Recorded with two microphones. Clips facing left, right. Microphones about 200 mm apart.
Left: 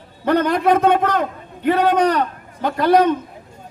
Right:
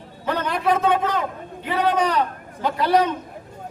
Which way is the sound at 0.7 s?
60° left (ahead or behind).